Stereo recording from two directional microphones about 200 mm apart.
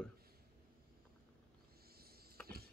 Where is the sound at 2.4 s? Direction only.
5° left (ahead or behind).